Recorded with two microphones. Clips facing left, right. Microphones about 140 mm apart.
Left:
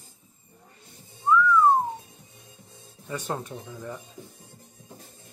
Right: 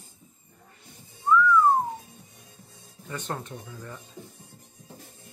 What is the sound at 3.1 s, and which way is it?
Speech, 10° left (ahead or behind).